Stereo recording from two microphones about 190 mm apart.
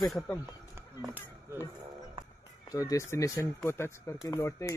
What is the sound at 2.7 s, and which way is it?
Speech, 15° left (ahead or behind).